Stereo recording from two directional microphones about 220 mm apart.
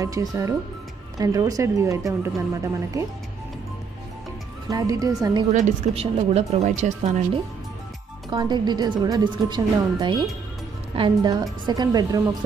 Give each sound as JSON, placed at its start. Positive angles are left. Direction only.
{"t": 0.0, "sound": "speech", "side_deg": -15}
{"t": 4.6, "sound": "speech", "side_deg": -15}
{"t": 5.5, "sound": "speech", "side_deg": -35}
{"t": 8.3, "sound": "speech", "side_deg": -20}